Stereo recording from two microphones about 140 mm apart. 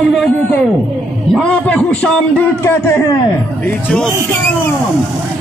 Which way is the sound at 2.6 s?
20° left (ahead or behind).